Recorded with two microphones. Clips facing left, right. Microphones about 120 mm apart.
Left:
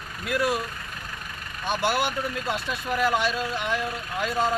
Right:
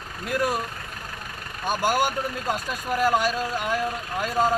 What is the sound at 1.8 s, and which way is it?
Speech, 40° right (ahead or behind).